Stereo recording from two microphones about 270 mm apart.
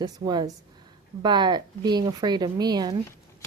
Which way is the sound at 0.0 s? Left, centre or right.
Centre.